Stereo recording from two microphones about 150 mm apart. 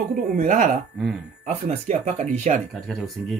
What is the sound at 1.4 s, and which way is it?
Speech, 45° right (ahead or behind).